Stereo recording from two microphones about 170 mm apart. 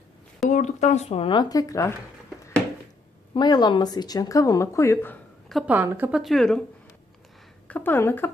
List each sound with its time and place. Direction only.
0.4 s speech: 45° left (ahead or behind); by 2.0 s 15° left (ahead or behind)
3.3 s speech: 25° left (ahead or behind)
5.5 s a woman's voice: centre (ahead or behind)
5.7 s a woman's voice: 10° right (ahead or behind)
7.7 s speech: 15° left (ahead or behind)